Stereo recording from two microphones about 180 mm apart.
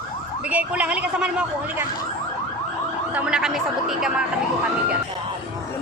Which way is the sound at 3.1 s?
5° right (ahead or behind).